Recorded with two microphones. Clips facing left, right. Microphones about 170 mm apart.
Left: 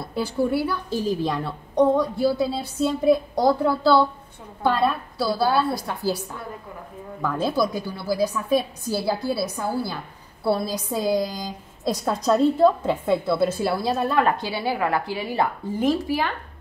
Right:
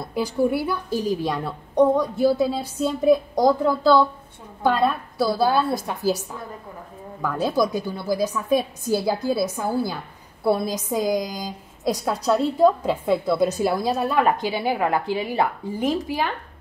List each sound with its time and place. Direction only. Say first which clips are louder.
0.1 s a woman's voice: right 1 dB; 15° right (ahead or behind)
5.3 s a woman's voice: even; 20° right (ahead or behind)
7.2 s a woman's voice: even; 10° right (ahead or behind)
7.5 s a woman's voice: right 2 dB; 20° right (ahead or behind)